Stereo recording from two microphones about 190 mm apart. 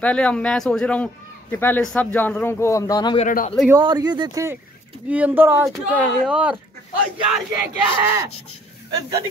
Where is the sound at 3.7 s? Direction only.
20° right (ahead or behind); by 6.6 s 5° right (ahead or behind).